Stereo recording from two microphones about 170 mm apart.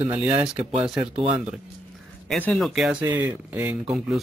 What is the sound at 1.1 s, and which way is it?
Speech, 35° right (ahead or behind).